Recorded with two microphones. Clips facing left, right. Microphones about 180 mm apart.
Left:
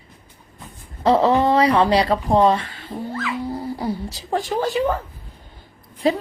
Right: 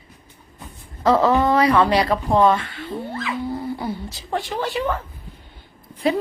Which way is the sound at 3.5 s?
40° left (ahead or behind).